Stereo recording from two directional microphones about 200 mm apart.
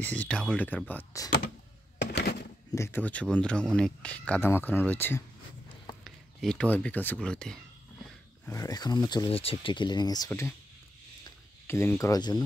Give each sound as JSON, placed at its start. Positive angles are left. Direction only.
{"t": 0.0, "sound": "speech", "side_deg": 5}
{"t": 2.0, "sound": "a sound", "side_deg": 55}
{"t": 2.7, "sound": "speech", "side_deg": 10}
{"t": 8.5, "sound": "speech", "side_deg": 15}